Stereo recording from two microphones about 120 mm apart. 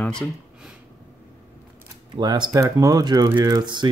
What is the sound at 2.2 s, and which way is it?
Speech, 35° right (ahead or behind).